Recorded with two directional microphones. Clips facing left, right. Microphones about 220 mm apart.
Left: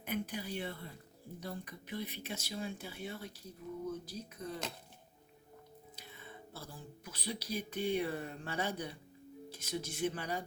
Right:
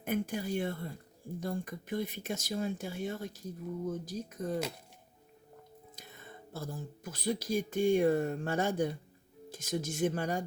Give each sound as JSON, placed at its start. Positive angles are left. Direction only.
{"t": 0.0, "sound": "speech", "side_deg": -45}
{"t": 6.0, "sound": "speech", "side_deg": -45}